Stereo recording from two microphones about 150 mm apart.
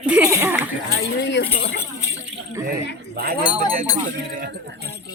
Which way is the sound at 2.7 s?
85° right.